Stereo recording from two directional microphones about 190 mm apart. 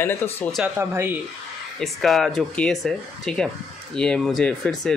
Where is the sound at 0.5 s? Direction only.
10° right (ahead or behind).